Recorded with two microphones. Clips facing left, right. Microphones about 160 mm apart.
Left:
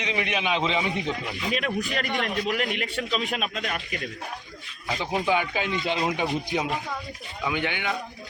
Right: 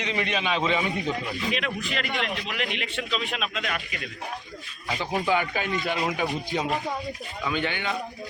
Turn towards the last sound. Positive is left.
turn(degrees=15)  # may be behind; listen again after turning